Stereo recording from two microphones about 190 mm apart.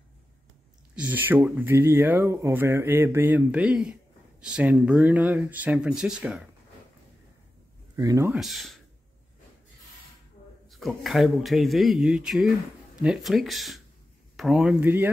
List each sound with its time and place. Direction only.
0.9 s speech: 10° right (ahead or behind)
7.9 s speech: 15° right (ahead or behind)
8.3 s speech: centre (ahead or behind)
10.7 s speech: centre (ahead or behind)